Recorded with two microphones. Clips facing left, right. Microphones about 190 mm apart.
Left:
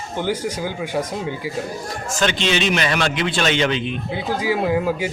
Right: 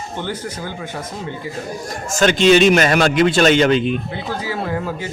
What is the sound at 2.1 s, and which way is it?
A man's voice, 45° right (ahead or behind).